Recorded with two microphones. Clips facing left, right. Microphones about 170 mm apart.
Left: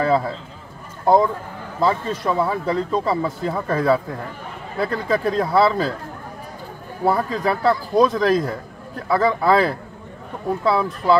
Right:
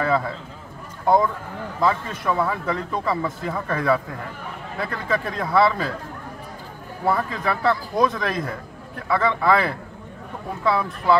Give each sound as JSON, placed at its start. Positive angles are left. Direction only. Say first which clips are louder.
{"t": 0.0, "sound": "a man's voice", "louder": "left 3 dB", "side_deg": 30}
{"t": 7.1, "sound": "speech", "louder": "left 3 dB", "side_deg": 35}